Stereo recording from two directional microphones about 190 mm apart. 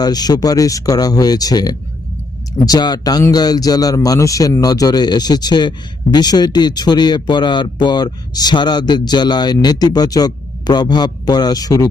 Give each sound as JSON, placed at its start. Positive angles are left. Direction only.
{"t": 0.0, "sound": "a man's voice", "side_deg": 20}